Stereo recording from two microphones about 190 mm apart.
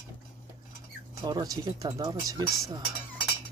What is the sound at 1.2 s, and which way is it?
Speech, 20° right (ahead or behind).